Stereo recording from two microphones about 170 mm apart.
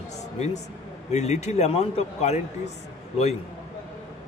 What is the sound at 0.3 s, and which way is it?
Speech, 40° left (ahead or behind).